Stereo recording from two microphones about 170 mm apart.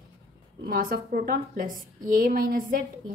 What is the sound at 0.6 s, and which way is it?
A woman's voice, 55° right (ahead or behind).